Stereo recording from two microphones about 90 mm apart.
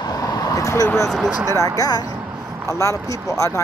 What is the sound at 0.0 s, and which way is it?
Vehicle, 45° left (ahead or behind).